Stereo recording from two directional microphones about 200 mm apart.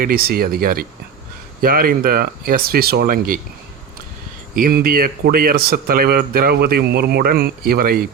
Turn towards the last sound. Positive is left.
turn(degrees=-45)  # may be behind; listen again after turning